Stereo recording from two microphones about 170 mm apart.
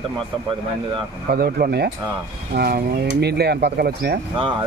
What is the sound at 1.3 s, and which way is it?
Speech, 65° right (ahead or behind).